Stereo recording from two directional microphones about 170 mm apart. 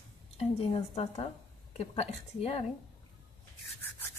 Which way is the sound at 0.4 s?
35° left (ahead or behind).